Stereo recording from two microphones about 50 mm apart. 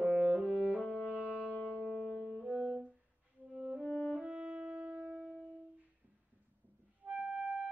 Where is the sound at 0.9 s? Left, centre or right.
Right.